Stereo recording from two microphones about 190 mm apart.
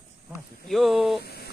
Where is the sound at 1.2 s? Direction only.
55° left (ahead or behind).